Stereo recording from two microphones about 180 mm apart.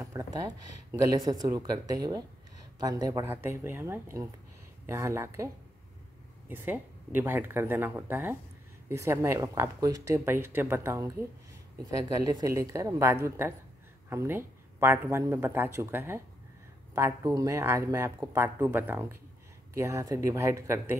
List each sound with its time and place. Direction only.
0.0 s speech: 15° right (ahead or behind)
6.5 s speech: 10° right (ahead or behind)